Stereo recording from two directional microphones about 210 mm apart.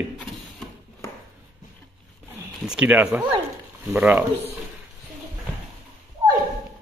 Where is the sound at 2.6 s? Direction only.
5° right (ahead or behind).